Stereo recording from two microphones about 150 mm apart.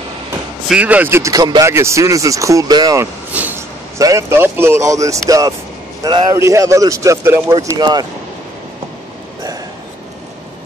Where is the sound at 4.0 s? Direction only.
20° right (ahead or behind).